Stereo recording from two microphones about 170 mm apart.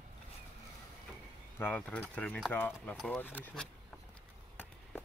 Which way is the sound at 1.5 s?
10° left (ahead or behind).